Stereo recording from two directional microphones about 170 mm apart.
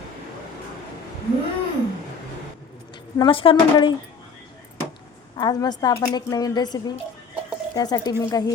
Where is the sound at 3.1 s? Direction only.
30° left (ahead or behind).